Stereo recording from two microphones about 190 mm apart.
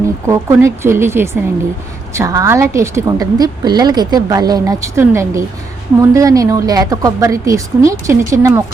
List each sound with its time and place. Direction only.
0.3 s a woman's voice: 15° right (ahead or behind)